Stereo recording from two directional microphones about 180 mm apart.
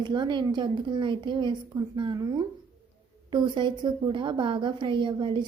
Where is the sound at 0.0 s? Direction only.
25° right (ahead or behind).